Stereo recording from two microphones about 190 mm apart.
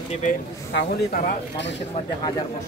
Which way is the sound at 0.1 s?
40° left (ahead or behind).